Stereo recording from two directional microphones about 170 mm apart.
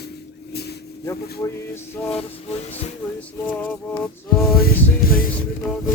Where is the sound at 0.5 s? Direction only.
70° left (ahead or behind).